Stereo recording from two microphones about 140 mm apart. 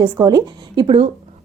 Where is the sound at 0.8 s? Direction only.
45° right (ahead or behind).